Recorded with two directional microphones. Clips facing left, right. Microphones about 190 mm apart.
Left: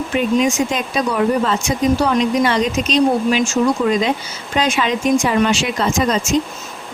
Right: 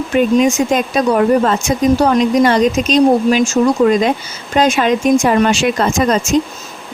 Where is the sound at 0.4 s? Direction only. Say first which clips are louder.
Right 4 dB; 50° right (ahead or behind).